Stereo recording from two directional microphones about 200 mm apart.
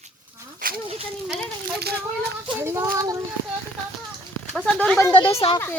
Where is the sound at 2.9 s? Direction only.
15° right (ahead or behind).